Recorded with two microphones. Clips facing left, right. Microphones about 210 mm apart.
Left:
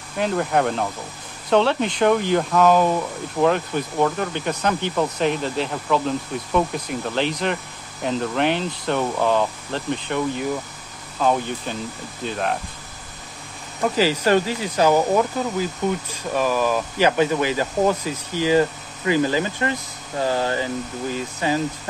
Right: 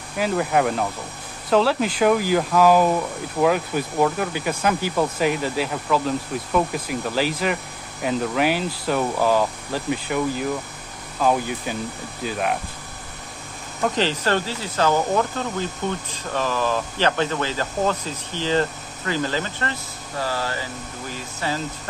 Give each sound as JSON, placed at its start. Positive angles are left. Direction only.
{"t": 0.2, "sound": "speech", "side_deg": -5}
{"t": 13.8, "sound": "speech", "side_deg": 5}